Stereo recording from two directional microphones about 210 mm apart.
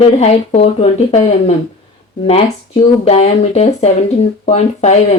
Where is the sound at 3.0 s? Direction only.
30° left (ahead or behind).